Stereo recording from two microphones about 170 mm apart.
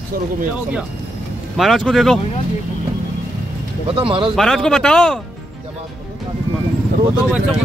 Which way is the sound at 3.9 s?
30° right (ahead or behind).